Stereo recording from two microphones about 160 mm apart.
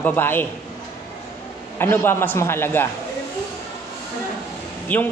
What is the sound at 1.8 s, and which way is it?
A man's voice, 15° left (ahead or behind).